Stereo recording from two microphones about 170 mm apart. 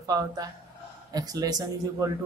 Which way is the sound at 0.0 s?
20° right (ahead or behind).